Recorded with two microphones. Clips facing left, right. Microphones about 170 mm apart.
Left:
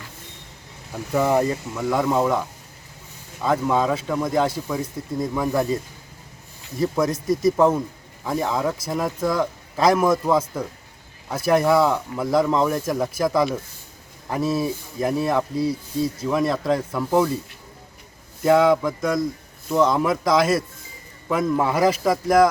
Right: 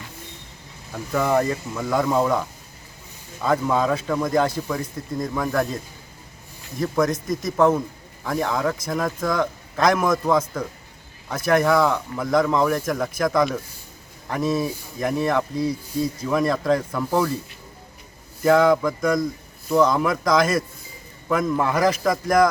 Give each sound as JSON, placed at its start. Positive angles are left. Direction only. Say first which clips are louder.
{"t": 0.9, "sound": "a man's voice", "louder": "left 1 dB", "side_deg": 15}
{"t": 3.4, "sound": "a man's voice", "louder": "even", "side_deg": 5}
{"t": 6.7, "sound": "a man's voice", "louder": "even", "side_deg": 10}
{"t": 18.4, "sound": "a man's voice", "louder": "even", "side_deg": 5}